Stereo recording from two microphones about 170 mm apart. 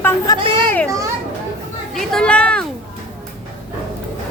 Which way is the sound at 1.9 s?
5° left (ahead or behind).